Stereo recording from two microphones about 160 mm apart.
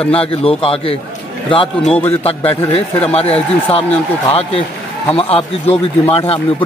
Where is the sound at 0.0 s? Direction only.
35° left (ahead or behind).